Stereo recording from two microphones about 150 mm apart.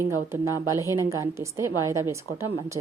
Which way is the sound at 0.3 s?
20° right (ahead or behind).